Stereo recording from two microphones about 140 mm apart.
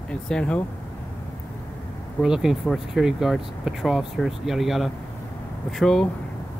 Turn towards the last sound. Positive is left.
turn(degrees=5)  # may be behind; listen again after turning